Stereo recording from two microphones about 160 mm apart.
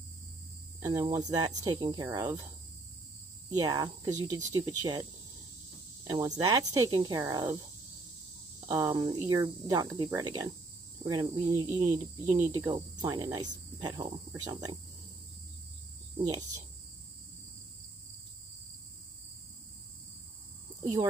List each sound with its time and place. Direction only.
0.8 s speech: 25° right (ahead or behind)
3.5 s speech: 20° right (ahead or behind)
6.0 s speech: 25° right (ahead or behind)
8.6 s speech: 25° right (ahead or behind)
16.3 s speech: 20° right (ahead or behind)